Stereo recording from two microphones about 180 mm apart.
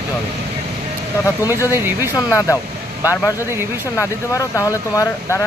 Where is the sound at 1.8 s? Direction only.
10° right (ahead or behind).